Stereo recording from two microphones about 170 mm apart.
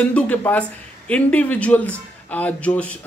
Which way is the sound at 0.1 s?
10° left (ahead or behind).